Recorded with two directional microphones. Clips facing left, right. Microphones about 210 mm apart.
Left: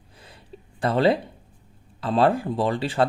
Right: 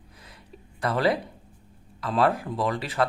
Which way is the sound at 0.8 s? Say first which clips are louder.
Left 4 dB; 30° left (ahead or behind).